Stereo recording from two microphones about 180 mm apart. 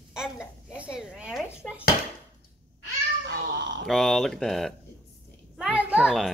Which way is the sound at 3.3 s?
75° right (ahead or behind).